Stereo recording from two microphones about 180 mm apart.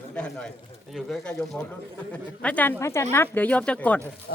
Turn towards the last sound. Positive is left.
turn(degrees=5)  # may be behind; listen again after turning